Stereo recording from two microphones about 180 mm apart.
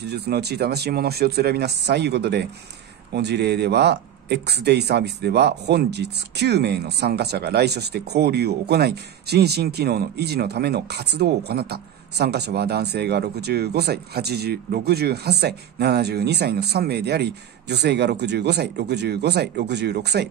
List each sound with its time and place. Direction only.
0.0 s speech: 65° right (ahead or behind)